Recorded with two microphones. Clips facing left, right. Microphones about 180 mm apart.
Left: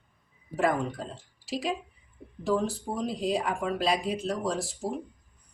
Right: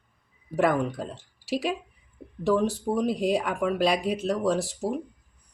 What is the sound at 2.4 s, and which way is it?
Speech, 70° right (ahead or behind).